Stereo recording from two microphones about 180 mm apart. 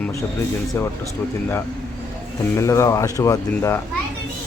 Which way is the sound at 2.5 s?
15° left (ahead or behind).